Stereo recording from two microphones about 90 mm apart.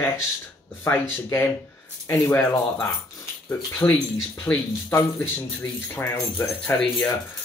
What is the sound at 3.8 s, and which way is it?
Speech, 30° left (ahead or behind).